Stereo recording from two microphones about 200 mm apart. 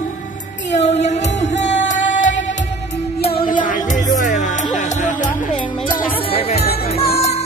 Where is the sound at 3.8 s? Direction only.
20° left (ahead or behind).